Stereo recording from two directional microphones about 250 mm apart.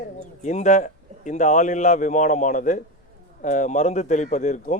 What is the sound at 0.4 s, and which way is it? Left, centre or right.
A man's voice, left.